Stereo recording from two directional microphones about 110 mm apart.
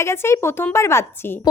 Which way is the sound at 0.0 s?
25° left (ahead or behind).